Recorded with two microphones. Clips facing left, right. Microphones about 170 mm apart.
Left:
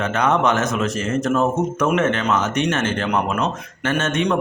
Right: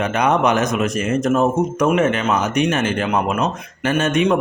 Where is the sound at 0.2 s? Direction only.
15° right (ahead or behind).